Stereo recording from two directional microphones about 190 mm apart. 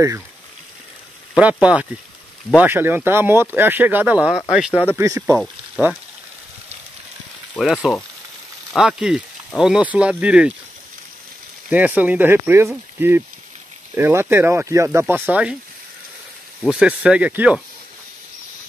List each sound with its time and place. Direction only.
1.3 s speech: 5° right (ahead or behind)
4.9 s speech: 15° right (ahead or behind)
5.4 s frying: 10° right (ahead or behind)
7.5 s speech: centre (ahead or behind)
11.7 s speech: 10° right (ahead or behind)
16.6 s speech: 5° right (ahead or behind)